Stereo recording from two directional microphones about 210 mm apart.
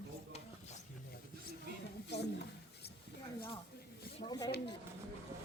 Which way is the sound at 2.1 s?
55° left (ahead or behind).